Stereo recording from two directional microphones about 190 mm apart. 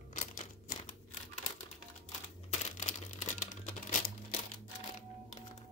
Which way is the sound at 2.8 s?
40° left (ahead or behind).